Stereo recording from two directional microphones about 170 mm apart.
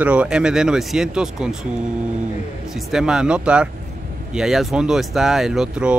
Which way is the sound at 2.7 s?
5° right (ahead or behind).